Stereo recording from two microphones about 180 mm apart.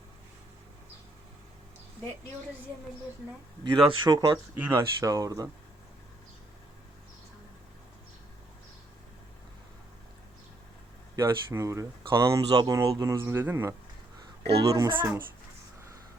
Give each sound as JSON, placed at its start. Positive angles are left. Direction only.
{"t": 3.6, "sound": "speech", "side_deg": -25}
{"t": 4.5, "sound": "speech", "side_deg": -10}
{"t": 11.2, "sound": "speech", "side_deg": -15}
{"t": 14.4, "sound": "speech", "side_deg": -65}
{"t": 14.7, "sound": "speech", "side_deg": -20}